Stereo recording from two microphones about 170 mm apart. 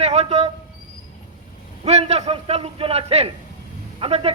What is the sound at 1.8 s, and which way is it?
Speech, 40° right (ahead or behind).